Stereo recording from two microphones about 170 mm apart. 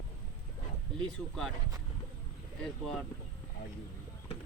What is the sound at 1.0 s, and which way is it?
Speech, 5° left (ahead or behind).